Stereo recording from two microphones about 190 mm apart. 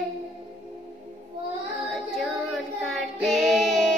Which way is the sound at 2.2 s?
Centre (ahead or behind).